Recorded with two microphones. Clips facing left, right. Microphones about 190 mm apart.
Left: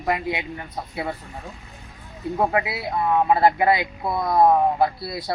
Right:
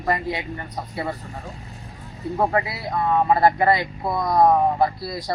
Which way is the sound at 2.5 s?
5° left (ahead or behind).